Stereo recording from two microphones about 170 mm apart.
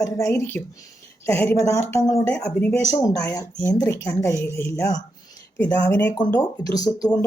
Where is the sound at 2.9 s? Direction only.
20° left (ahead or behind).